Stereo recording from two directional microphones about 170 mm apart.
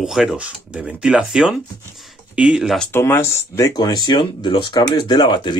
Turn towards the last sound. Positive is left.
turn(degrees=25)  # may be behind; listen again after turning